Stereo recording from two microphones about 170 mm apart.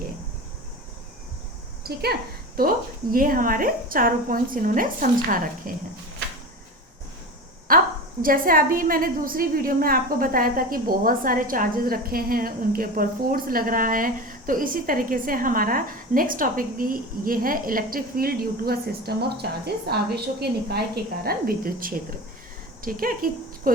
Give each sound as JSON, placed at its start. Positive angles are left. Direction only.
{"t": 1.8, "sound": "speech", "side_deg": -70}
{"t": 2.6, "sound": "a woman's voice", "side_deg": -55}
{"t": 7.7, "sound": "a sound", "side_deg": -55}
{"t": 8.2, "sound": "a woman's voice", "side_deg": -55}